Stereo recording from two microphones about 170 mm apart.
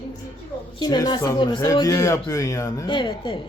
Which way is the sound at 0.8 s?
25° left (ahead or behind).